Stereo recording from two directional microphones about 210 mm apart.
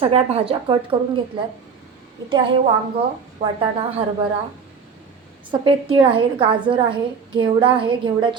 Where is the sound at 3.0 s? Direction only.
25° right (ahead or behind).